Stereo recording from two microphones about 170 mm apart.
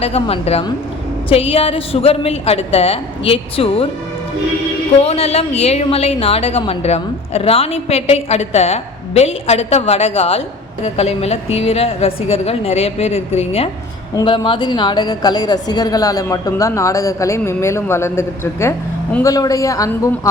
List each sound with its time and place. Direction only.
0.0 s a woman's voice: 35° left (ahead or behind)
5.0 s a woman's voice: 40° left (ahead or behind); by 20.1 s 20° left (ahead or behind)